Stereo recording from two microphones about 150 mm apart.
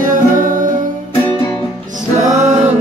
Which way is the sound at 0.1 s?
65° right (ahead or behind).